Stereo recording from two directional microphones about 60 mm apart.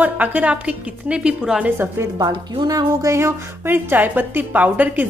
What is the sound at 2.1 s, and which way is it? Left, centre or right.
Speech, right.